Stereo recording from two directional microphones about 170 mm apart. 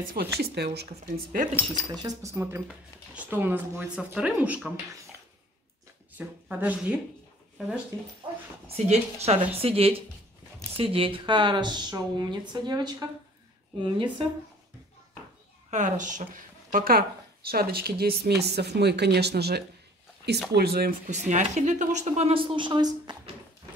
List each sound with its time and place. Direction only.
0.0 s speech: 60° right (ahead or behind)
2.0 s speech: 20° right (ahead or behind)
6.1 s speech: 10° right (ahead or behind)
7.9 s speech: 20° right (ahead or behind)
8.6 s speech: 40° right (ahead or behind)
15.7 s speech: 45° right (ahead or behind); by 21.0 s 65° right (ahead or behind)
21.1 s speech: 45° right (ahead or behind); by 23.3 s 25° right (ahead or behind)